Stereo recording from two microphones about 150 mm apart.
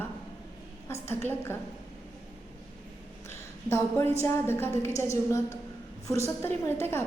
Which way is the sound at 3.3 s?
20° left (ahead or behind).